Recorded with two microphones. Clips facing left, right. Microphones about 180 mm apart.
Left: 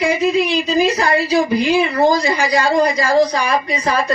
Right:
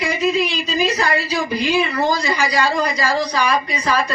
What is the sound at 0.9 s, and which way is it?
Speech, 30° left (ahead or behind).